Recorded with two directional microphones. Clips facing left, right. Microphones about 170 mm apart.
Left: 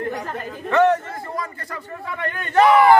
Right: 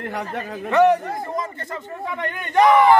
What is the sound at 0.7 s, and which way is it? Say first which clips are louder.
Speech: right 1 dB; 15° right (ahead or behind).